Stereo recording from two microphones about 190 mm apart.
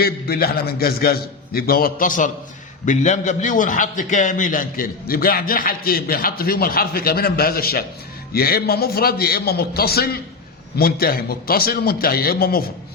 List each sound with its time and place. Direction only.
0.0 s a man's voice: 55° left (ahead or behind)